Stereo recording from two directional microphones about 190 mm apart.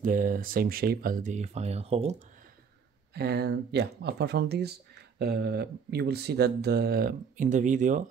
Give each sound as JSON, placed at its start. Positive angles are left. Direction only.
{"t": 0.0, "sound": "speech", "side_deg": -45}
{"t": 3.2, "sound": "speech", "side_deg": -60}